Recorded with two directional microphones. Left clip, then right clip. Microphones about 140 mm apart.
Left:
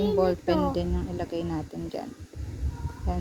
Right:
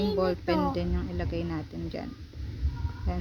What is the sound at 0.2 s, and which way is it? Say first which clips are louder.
Speech: left 3 dB; 20° right (ahead or behind).